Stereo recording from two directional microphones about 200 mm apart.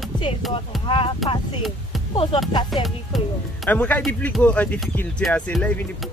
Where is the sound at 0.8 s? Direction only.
25° left (ahead or behind).